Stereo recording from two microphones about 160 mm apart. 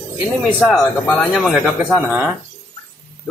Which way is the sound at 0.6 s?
5° left (ahead or behind).